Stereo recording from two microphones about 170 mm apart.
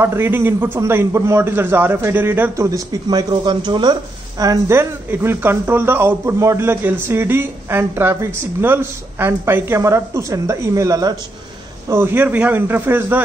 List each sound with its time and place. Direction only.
0.0 s a man's voice: 15° right (ahead or behind)